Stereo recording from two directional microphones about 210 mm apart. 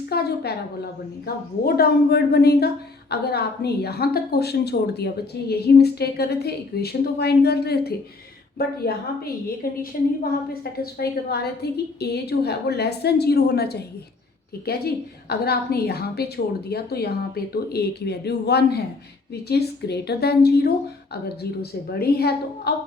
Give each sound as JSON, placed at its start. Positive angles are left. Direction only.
{"t": 0.1, "sound": "a woman's voice", "side_deg": 50}
{"t": 10.5, "sound": "a woman's voice", "side_deg": 45}